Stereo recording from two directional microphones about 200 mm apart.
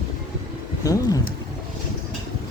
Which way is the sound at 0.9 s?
15° left (ahead or behind).